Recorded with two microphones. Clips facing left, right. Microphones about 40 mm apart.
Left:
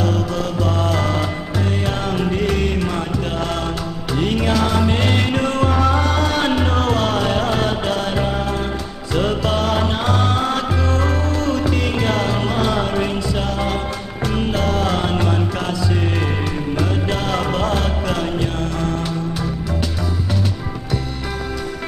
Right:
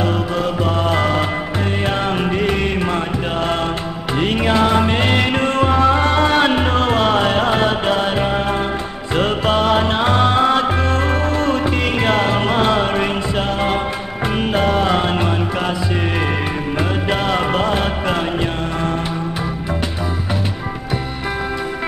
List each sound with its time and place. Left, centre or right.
0.7 s music: right
4.2 s music: right
14.5 s music: right
17.1 s music: right